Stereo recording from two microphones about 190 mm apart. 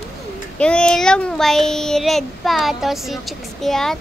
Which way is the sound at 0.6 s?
5° left (ahead or behind).